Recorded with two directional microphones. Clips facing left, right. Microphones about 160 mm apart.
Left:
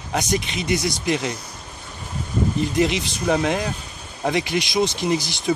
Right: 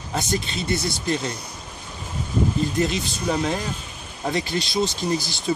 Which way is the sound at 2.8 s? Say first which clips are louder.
Left 3 dB; 20° left (ahead or behind).